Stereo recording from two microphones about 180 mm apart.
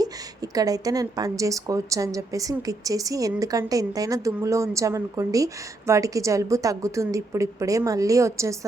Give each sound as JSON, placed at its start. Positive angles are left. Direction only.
{"t": 0.0, "sound": "a woman's voice", "side_deg": -20}